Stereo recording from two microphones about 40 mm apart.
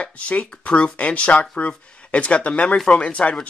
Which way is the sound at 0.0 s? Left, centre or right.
Left.